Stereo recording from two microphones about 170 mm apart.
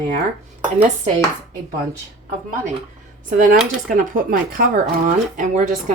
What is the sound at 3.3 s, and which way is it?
Speech, 50° right (ahead or behind).